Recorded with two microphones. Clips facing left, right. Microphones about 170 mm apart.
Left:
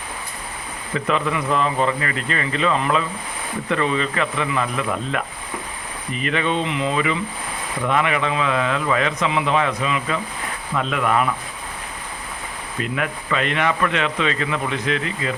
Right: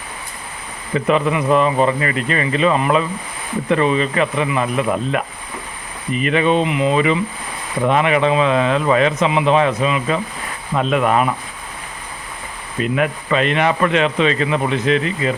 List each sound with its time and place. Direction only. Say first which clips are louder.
0.9 s speech: right 5 dB; 20° right (ahead or behind)
12.8 s speech: right 7 dB; 20° right (ahead or behind)